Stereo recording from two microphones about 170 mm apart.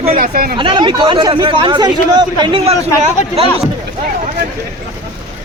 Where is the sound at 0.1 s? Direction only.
60° right (ahead or behind).